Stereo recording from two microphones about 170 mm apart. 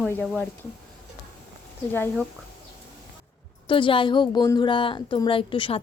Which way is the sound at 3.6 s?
30° left (ahead or behind).